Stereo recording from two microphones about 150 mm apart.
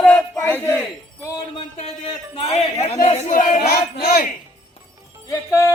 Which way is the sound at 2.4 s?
45° left (ahead or behind).